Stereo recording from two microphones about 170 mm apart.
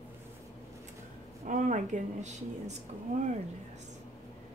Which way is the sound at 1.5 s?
45° right (ahead or behind).